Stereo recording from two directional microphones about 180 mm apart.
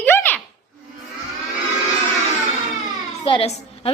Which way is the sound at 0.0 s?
10° left (ahead or behind).